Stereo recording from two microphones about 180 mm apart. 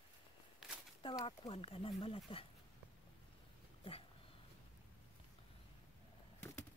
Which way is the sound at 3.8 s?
30° left (ahead or behind).